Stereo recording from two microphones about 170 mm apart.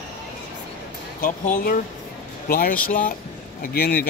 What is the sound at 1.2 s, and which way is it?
Speech, 55° left (ahead or behind).